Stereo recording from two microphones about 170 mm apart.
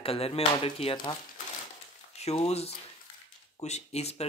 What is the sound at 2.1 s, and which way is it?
Speech, 40° left (ahead or behind).